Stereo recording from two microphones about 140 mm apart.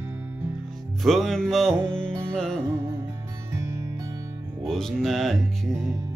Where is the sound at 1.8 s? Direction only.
15° right (ahead or behind).